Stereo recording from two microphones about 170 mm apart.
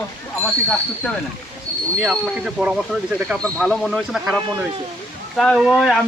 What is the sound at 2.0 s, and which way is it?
Speech, 5° right (ahead or behind).